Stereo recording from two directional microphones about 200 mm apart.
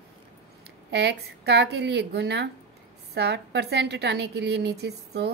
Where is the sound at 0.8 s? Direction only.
55° right (ahead or behind).